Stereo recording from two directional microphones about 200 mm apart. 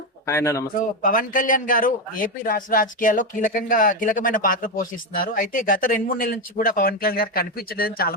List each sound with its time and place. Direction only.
0.3 s speech: 15° left (ahead or behind)
0.8 s a man's voice: 40° left (ahead or behind)